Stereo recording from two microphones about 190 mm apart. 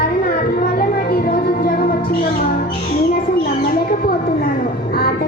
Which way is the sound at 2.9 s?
50° left (ahead or behind).